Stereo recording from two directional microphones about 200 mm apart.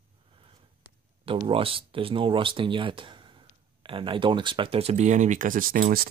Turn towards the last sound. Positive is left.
turn(degrees=-45)  # may be behind; listen again after turning